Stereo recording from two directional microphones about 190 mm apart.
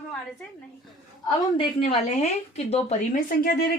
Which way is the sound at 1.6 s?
35° left (ahead or behind).